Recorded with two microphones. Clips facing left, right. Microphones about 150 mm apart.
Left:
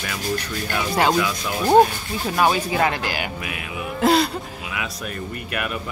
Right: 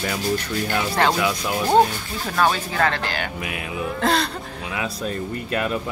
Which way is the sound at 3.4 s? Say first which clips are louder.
Right 2 dB; 25° right (ahead or behind).